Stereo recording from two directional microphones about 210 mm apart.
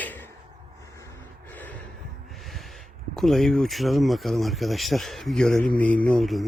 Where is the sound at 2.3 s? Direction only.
Centre (ahead or behind).